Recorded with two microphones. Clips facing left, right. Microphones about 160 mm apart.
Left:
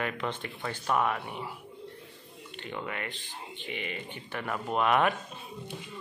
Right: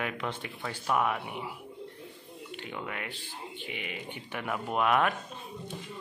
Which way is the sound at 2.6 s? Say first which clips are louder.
Left 2 dB; 5° right (ahead or behind).